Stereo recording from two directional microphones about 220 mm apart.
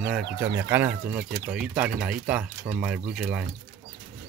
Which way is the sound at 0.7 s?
10° right (ahead or behind).